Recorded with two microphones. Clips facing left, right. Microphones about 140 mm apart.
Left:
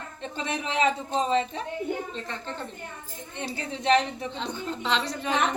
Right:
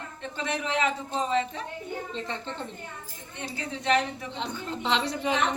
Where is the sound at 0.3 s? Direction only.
20° left (ahead or behind).